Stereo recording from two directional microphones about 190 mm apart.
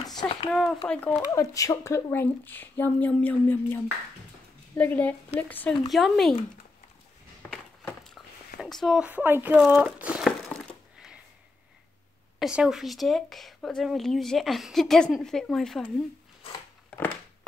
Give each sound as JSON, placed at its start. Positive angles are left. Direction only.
{"t": 0.2, "sound": "a sound", "side_deg": 25}
{"t": 0.5, "sound": "speech", "side_deg": 0}
{"t": 1.3, "sound": "a woman's voice", "side_deg": 15}
{"t": 8.5, "sound": "crumpling", "side_deg": 0}
{"t": 12.4, "sound": "speech", "side_deg": -5}